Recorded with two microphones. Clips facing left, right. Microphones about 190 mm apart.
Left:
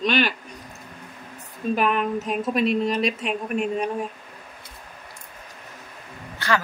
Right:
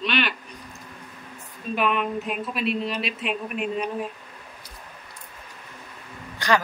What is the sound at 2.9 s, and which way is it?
Speech, 45° left (ahead or behind).